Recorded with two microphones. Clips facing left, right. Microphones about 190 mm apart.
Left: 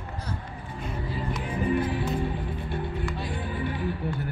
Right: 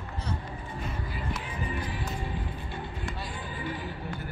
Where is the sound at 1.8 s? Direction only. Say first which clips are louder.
Left 8 dB; 55° left (ahead or behind).